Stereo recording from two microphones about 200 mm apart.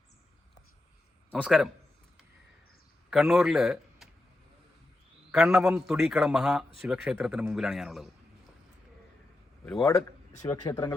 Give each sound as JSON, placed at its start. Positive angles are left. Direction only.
{"t": 1.4, "sound": "a man's voice", "side_deg": 0}
{"t": 3.1, "sound": "a man's voice", "side_deg": 0}
{"t": 5.3, "sound": "a man's voice", "side_deg": 0}
{"t": 10.4, "sound": "speech", "side_deg": 15}